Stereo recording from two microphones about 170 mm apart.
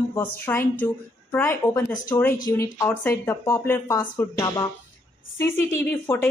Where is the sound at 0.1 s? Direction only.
15° left (ahead or behind).